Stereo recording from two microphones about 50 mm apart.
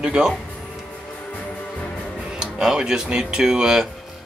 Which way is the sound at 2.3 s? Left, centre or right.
Centre.